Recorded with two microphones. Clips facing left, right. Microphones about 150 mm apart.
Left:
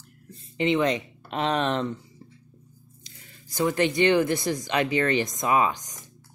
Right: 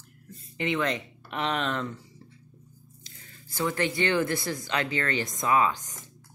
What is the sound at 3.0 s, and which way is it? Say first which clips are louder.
Speech: left 1 dB; 15° left (ahead or behind).